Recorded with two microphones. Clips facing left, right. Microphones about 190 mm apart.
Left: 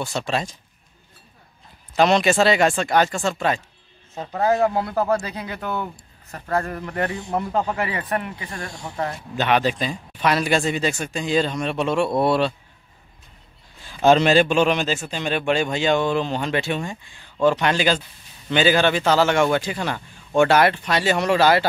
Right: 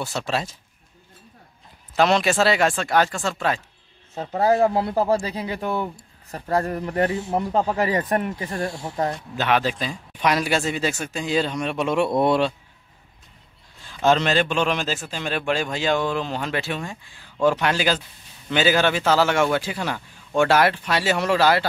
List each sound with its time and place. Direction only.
0.0 s a man's voice: 5° right (ahead or behind)
2.0 s a man's voice: centre (ahead or behind)
4.3 s speech: 30° right (ahead or behind)
9.4 s a man's voice: centre (ahead or behind)
10.1 s speech: 10° right (ahead or behind)
13.8 s a man's voice: 10° left (ahead or behind)